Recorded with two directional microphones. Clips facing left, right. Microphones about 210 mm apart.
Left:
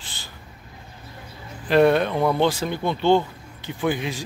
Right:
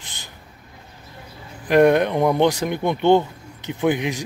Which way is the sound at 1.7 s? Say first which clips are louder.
Right 2 dB; 15° right (ahead or behind).